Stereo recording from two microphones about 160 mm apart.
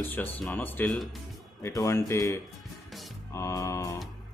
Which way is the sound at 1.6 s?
20° left (ahead or behind).